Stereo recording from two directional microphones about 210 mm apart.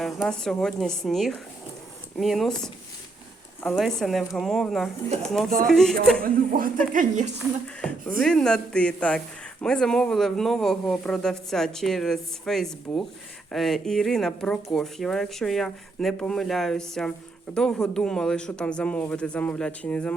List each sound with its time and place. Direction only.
0.0 s speech: 5° left (ahead or behind)
6.2 s speech: 40° right (ahead or behind)
7.8 s speech: 5° left (ahead or behind)